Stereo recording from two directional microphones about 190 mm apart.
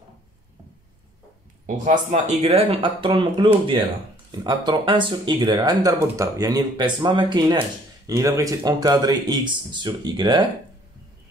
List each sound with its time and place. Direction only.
1.9 s speech: 35° right (ahead or behind)